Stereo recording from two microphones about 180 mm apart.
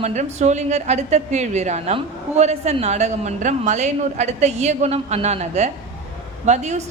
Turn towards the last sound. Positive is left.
turn(degrees=-40)  # may be behind; listen again after turning